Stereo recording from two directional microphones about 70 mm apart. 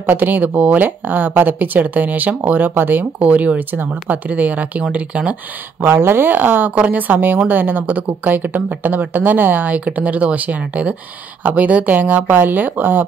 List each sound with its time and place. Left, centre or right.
0.0 s speech: right